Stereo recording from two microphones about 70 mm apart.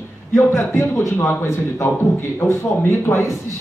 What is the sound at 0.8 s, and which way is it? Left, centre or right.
A man's voice, left.